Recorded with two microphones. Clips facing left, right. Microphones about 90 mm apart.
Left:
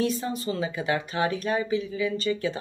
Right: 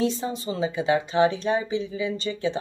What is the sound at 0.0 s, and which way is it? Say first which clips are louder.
Speech: right 1 dB; 25° right (ahead or behind).